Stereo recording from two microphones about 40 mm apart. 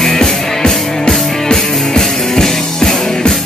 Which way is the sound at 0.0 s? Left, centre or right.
Centre.